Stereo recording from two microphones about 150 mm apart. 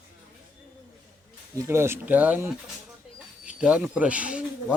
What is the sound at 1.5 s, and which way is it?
Speech, 20° right (ahead or behind).